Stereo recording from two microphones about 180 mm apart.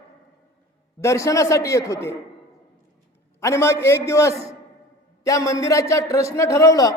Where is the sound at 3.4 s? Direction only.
15° left (ahead or behind).